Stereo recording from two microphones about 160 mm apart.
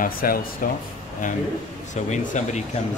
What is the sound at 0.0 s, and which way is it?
Speech, 65° left (ahead or behind).